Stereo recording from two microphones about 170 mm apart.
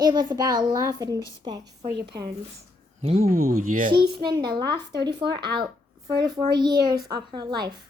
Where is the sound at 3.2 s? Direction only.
55° right (ahead or behind).